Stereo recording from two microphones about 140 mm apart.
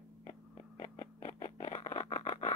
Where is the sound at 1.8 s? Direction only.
45° left (ahead or behind).